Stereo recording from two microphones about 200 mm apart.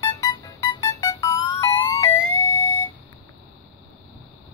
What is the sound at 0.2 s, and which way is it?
Music, 15° left (ahead or behind).